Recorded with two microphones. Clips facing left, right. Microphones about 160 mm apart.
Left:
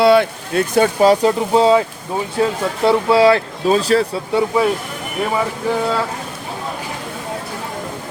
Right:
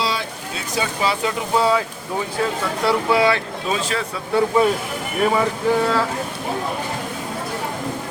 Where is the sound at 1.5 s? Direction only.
25° left (ahead or behind).